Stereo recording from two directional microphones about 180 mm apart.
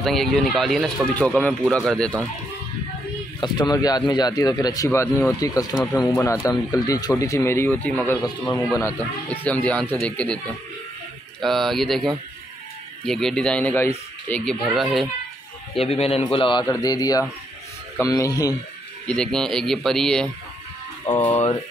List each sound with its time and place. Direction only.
0.0 s speech: centre (ahead or behind)
3.3 s speech: 25° left (ahead or behind); by 10.4 s 5° left (ahead or behind)
11.4 s speech: centre (ahead or behind)
15.8 s speech: 35° left (ahead or behind)
19.0 s speech: 5° left (ahead or behind)
21.0 s speech: 25° left (ahead or behind)
21.3 s speech: 35° left (ahead or behind)